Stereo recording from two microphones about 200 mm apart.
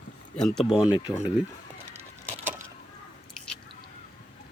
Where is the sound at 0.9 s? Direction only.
20° left (ahead or behind).